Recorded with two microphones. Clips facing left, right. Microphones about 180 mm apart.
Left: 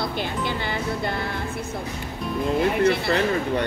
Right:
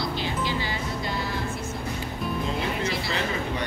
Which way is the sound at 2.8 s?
60° left (ahead or behind).